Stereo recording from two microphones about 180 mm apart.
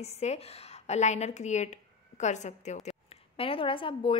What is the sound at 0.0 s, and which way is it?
A woman's voice, 35° left (ahead or behind).